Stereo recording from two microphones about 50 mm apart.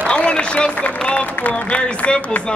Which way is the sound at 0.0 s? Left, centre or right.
Centre.